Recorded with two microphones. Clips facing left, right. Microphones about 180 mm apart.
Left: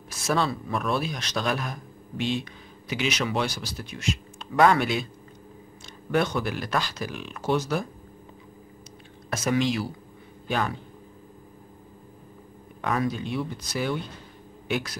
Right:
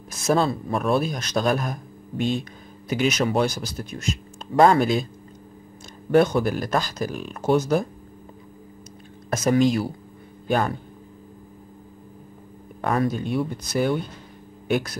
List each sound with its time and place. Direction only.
0.3 s speech: 40° right (ahead or behind)
2.9 s speech: 45° right (ahead or behind)
6.1 s speech: 45° right (ahead or behind)
9.3 s speech: 45° right (ahead or behind)
12.8 s speech: 50° right (ahead or behind)